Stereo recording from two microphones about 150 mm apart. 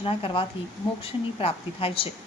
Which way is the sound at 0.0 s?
35° left (ahead or behind).